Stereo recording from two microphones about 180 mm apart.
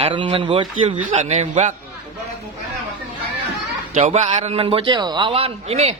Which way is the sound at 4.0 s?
40° right (ahead or behind).